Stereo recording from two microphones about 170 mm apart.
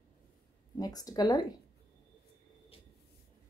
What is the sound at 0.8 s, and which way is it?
Speech, 20° left (ahead or behind).